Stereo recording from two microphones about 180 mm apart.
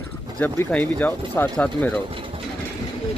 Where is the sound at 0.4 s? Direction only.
10° left (ahead or behind).